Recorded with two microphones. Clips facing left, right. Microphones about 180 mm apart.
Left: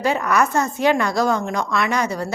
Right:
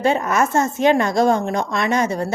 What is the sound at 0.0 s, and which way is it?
A woman's voice, 25° right (ahead or behind).